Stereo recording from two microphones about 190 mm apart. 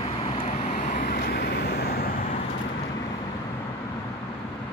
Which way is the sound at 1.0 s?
50° left (ahead or behind).